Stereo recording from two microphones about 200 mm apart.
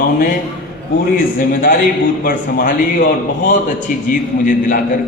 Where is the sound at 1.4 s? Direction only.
45° left (ahead or behind).